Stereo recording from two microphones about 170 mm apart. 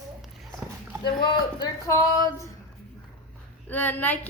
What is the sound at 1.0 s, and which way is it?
Speech, 25° left (ahead or behind).